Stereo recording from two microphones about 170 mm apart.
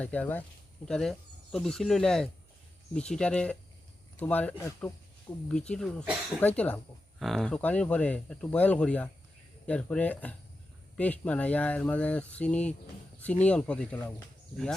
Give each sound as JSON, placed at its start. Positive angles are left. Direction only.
{"t": 0.0, "sound": "speech", "side_deg": 10}